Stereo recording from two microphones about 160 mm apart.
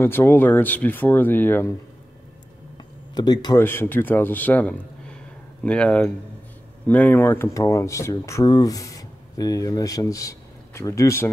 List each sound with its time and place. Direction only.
0.0 s speech: 15° left (ahead or behind)
3.2 s speech: 25° left (ahead or behind)
3.6 s speech: 15° left (ahead or behind)